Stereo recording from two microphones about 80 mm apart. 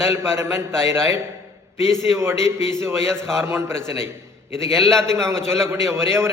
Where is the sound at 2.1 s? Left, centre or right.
Right.